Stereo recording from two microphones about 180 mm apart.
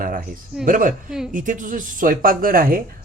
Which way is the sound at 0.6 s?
50° right (ahead or behind).